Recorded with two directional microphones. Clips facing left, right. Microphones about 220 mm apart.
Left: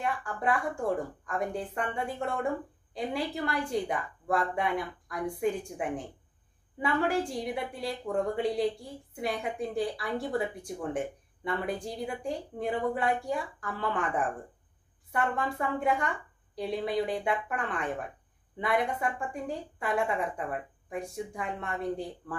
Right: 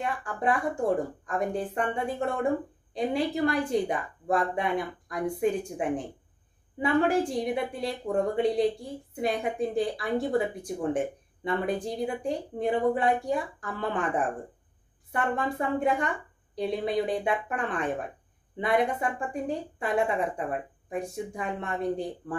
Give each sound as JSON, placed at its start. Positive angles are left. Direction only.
{"t": 0.0, "sound": "a woman's voice", "side_deg": -20}
{"t": 15.3, "sound": "a woman's voice", "side_deg": -20}